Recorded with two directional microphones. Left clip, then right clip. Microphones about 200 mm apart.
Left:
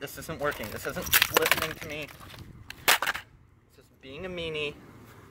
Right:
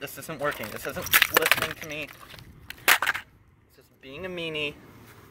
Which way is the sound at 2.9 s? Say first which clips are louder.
Right 3 dB; 20° left (ahead or behind).